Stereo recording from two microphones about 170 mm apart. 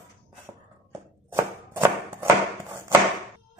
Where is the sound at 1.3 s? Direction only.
15° right (ahead or behind).